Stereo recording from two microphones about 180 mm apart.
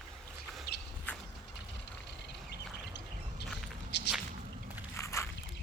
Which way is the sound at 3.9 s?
70° left (ahead or behind).